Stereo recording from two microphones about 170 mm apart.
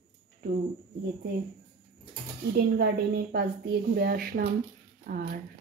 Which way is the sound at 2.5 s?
75° right (ahead or behind).